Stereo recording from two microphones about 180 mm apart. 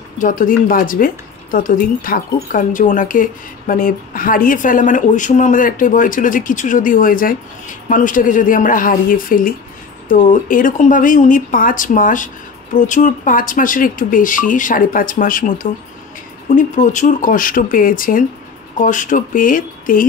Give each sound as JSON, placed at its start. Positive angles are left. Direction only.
{"t": 0.2, "sound": "a woman's voice", "side_deg": 50}